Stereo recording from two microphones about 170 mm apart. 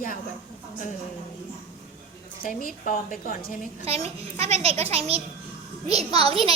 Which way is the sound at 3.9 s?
35° right (ahead or behind).